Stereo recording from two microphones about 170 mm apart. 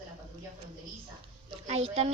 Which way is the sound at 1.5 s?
35° right (ahead or behind).